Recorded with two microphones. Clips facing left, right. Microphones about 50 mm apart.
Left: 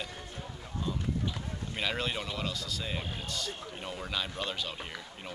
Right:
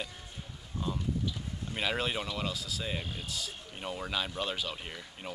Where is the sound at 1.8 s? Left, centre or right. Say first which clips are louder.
Right 1 dB; centre.